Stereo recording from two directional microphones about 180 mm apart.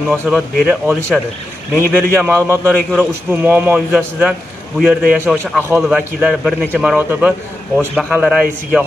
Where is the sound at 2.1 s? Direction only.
15° right (ahead or behind).